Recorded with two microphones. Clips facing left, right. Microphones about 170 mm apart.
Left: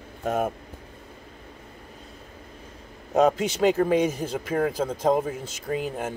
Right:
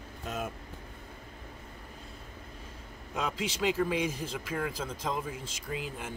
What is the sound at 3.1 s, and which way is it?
A man's voice, 45° left (ahead or behind).